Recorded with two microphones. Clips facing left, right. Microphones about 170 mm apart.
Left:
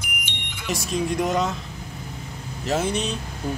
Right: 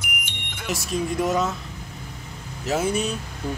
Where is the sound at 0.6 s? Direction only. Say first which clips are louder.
Left 1 dB; centre (ahead or behind).